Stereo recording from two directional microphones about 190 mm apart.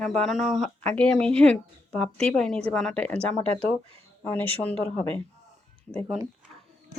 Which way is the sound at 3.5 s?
30° right (ahead or behind).